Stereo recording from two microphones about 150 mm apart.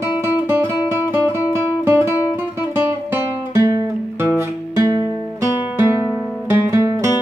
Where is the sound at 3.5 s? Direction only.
25° right (ahead or behind).